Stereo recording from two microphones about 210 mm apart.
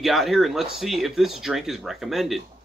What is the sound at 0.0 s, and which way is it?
Speech, centre (ahead or behind).